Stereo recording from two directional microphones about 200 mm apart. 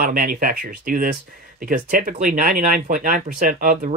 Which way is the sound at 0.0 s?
45° right (ahead or behind).